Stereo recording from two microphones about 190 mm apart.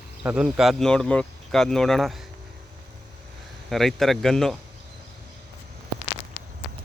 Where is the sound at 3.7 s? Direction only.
Centre (ahead or behind).